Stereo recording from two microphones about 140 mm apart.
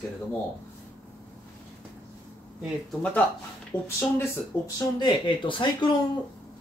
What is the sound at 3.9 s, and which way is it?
Speech, 15° left (ahead or behind).